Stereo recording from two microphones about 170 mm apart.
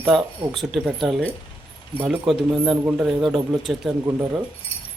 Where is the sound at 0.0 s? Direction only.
Centre (ahead or behind).